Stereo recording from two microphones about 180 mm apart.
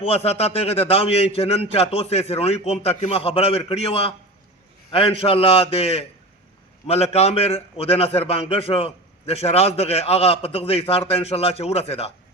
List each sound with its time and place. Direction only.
0.0 s a man's voice: 35° left (ahead or behind)